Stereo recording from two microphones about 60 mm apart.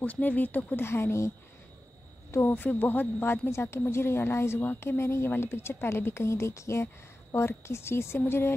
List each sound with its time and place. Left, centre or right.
0.0 s speech: left
0.8 s a woman's voice: left
2.4 s speech: left
3.4 s a woman's voice: left